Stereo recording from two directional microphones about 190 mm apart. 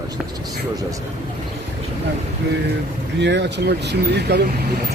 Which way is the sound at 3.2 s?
65° right (ahead or behind).